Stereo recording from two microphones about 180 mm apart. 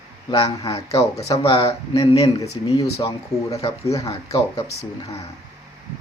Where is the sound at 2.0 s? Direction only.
20° left (ahead or behind).